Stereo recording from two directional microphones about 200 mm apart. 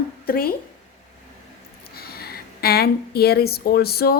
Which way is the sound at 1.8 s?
50° left (ahead or behind).